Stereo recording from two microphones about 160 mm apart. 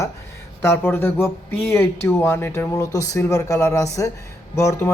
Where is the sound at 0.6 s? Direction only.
15° left (ahead or behind).